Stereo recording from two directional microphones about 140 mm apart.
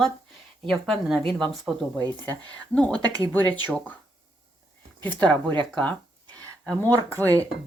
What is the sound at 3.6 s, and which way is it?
Speech, 10° left (ahead or behind).